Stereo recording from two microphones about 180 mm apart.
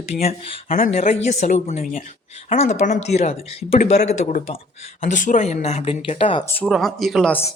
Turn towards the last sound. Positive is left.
turn(degrees=5)  # may be behind; listen again after turning